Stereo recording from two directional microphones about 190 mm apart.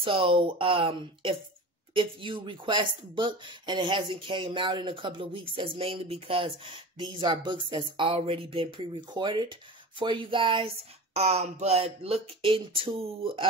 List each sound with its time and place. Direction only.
0.0 s speech: 30° right (ahead or behind)